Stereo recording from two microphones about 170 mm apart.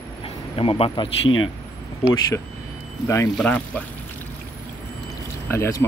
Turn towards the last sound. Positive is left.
turn(degrees=15)  # may be behind; listen again after turning